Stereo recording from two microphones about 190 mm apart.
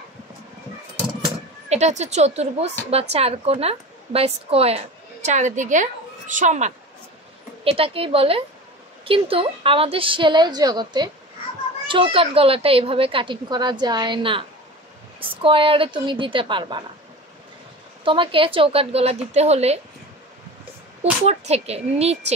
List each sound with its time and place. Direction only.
1.2 s a woman's voice: 35° right (ahead or behind)
18.0 s a woman's voice: 25° right (ahead or behind)
21.0 s a woman's voice: 35° right (ahead or behind)